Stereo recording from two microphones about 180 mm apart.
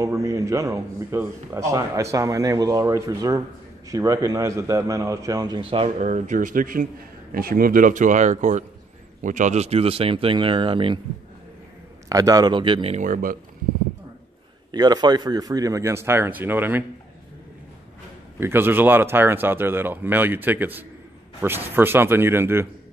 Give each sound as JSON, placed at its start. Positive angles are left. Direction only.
{"t": 0.0, "sound": "a man's voice", "side_deg": -20}
{"t": 12.1, "sound": "a man's voice", "side_deg": -20}
{"t": 13.0, "sound": "speech", "side_deg": -50}
{"t": 14.7, "sound": "a man's voice", "side_deg": -20}
{"t": 18.4, "sound": "a man's voice", "side_deg": -10}